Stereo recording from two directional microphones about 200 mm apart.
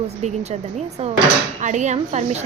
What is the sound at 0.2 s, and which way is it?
Speech, 35° right (ahead or behind).